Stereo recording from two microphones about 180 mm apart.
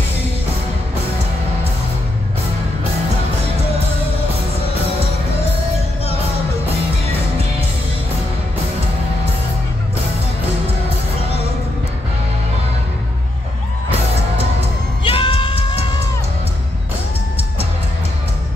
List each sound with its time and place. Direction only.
15.0 s music: 30° left (ahead or behind)